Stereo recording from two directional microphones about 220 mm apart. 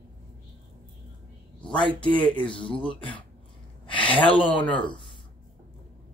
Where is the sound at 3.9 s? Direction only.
25° left (ahead or behind).